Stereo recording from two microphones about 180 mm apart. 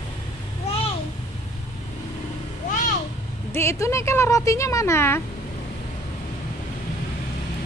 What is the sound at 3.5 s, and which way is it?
Speech, 15° left (ahead or behind).